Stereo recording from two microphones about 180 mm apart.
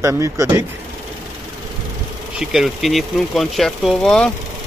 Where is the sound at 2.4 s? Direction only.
Centre (ahead or behind).